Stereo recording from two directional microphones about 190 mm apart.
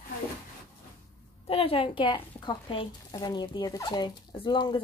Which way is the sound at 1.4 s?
30° left (ahead or behind).